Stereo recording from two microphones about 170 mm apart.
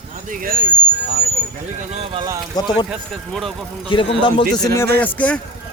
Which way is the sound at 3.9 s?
30° left (ahead or behind).